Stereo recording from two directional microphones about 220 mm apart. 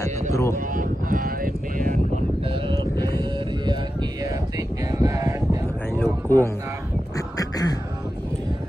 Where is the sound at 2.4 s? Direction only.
25° right (ahead or behind).